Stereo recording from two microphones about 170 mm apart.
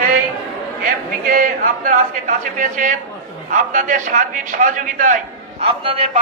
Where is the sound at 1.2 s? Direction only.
55° right (ahead or behind).